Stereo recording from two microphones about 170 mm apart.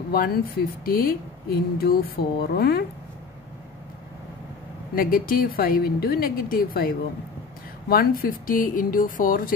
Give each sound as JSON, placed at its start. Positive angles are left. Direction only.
{"t": 0.1, "sound": "a woman's voice", "side_deg": 60}
{"t": 4.9, "sound": "a woman's voice", "side_deg": 60}